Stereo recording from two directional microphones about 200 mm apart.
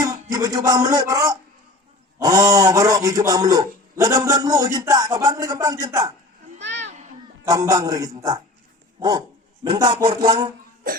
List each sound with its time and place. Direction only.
0.0 s a man's voice: 20° right (ahead or behind)
6.6 s a sound: 60° right (ahead or behind)
7.4 s a man's voice: 20° right (ahead or behind)
9.0 s dog: 20° right (ahead or behind)
9.6 s a man's voice: 20° right (ahead or behind)